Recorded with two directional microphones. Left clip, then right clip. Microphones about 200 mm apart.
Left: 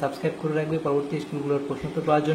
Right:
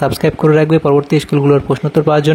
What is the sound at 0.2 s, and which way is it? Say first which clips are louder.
A man's voice: right 15 dB; 55° right (ahead or behind).